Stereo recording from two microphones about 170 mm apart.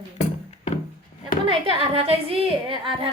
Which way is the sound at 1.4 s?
30° right (ahead or behind).